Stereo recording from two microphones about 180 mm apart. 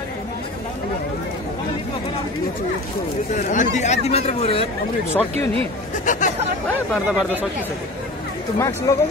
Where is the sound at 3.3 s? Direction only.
45° left (ahead or behind).